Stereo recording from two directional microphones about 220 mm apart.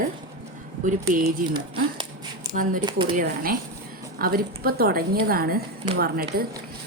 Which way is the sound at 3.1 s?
40° right (ahead or behind).